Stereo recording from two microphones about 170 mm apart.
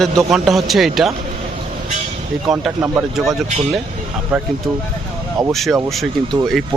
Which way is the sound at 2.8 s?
15° right (ahead or behind).